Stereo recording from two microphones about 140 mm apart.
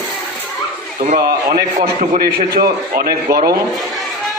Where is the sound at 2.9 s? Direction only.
90° right.